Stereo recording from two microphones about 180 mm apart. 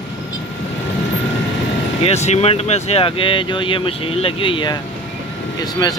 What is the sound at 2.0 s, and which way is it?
Speech, 40° left (ahead or behind).